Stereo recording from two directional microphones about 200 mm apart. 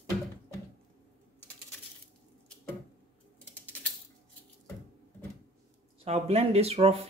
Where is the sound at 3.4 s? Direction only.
5° left (ahead or behind).